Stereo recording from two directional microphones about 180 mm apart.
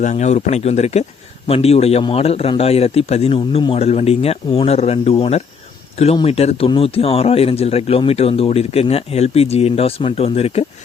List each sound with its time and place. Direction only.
0.0 s a man's voice: 40° left (ahead or behind)